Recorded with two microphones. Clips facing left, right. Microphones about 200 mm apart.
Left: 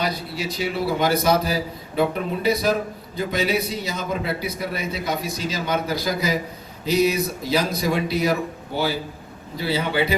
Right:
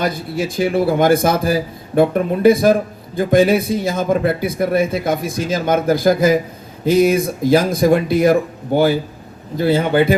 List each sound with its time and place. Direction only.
0.0 s a man's voice: 50° right (ahead or behind)